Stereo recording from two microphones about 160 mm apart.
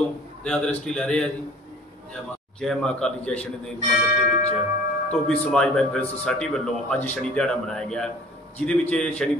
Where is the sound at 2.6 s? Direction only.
5° left (ahead or behind).